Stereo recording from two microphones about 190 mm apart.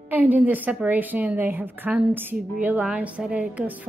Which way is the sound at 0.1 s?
10° right (ahead or behind).